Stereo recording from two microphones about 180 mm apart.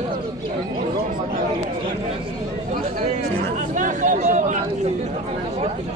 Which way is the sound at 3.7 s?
45° right (ahead or behind).